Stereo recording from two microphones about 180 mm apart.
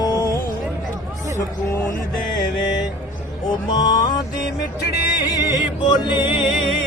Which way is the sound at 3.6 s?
25° left (ahead or behind).